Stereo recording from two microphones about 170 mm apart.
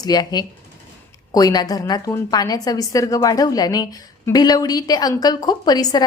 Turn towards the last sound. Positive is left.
turn(degrees=25)  # may be behind; listen again after turning